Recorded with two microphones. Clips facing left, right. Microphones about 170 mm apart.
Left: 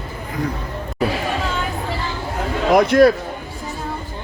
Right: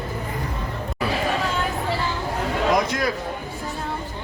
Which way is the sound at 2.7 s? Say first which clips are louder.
Left 14 dB; 65° left (ahead or behind).